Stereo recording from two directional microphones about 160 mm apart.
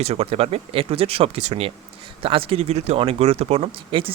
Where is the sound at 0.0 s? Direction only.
40° right (ahead or behind).